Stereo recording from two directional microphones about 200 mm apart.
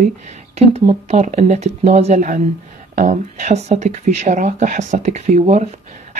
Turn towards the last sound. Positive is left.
turn(degrees=-35)  # may be behind; listen again after turning